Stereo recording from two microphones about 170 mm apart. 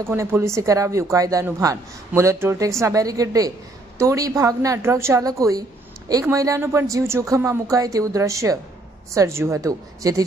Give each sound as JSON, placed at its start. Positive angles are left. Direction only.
{"t": 0.0, "sound": "a woman's voice", "side_deg": -15}